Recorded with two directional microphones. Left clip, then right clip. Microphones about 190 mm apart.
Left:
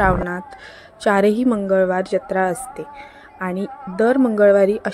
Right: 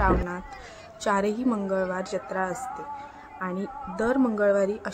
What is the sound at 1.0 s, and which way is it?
Speech, 30° left (ahead or behind).